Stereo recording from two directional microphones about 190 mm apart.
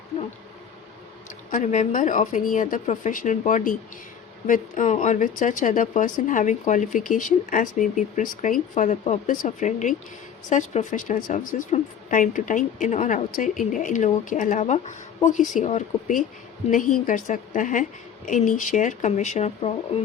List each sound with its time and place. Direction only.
1.5 s speech: 40° left (ahead or behind)